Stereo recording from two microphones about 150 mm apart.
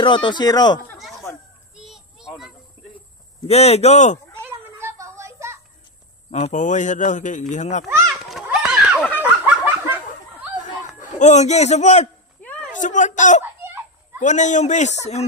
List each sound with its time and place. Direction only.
0.0 s speech: 30° left (ahead or behind)
1.8 s children playing: centre (ahead or behind)
3.4 s speech: 45° left (ahead or behind)
4.4 s a sound: 15° right (ahead or behind)
6.3 s a man's voice: 55° left (ahead or behind)
8.1 s a sound: centre (ahead or behind)
9.2 s fowl: 10° right (ahead or behind)
10.6 s a sound: 55° left (ahead or behind)
12.4 s a sound: 10° left (ahead or behind)
12.7 s a man's voice: 55° left (ahead or behind)
13.6 s children playing: 15° right (ahead or behind)
14.2 s speech: 55° left (ahead or behind)